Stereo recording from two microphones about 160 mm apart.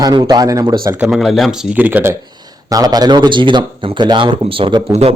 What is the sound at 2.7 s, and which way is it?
Speech, 25° right (ahead or behind).